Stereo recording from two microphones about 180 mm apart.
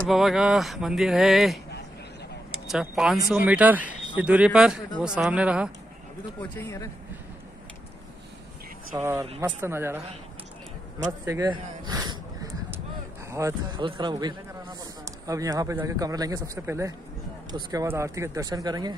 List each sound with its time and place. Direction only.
0.1 s speech: centre (ahead or behind)
2.7 s speech: centre (ahead or behind)
6.5 s speech: 15° left (ahead or behind)
8.9 s speech: 15° right (ahead or behind)
11.1 s a sound: 15° right (ahead or behind)
13.3 s speech: 15° right (ahead or behind)
13.7 s a man's voice: 25° right (ahead or behind)